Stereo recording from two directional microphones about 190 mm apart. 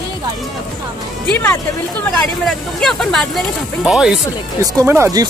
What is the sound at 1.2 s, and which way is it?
Speech, 10° left (ahead or behind).